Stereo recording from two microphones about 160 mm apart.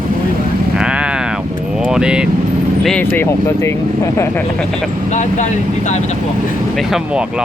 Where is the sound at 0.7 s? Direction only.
5° right (ahead or behind).